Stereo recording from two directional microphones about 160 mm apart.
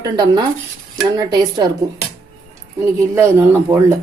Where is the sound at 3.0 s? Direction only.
15° right (ahead or behind).